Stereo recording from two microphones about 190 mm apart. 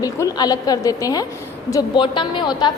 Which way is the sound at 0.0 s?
20° left (ahead or behind).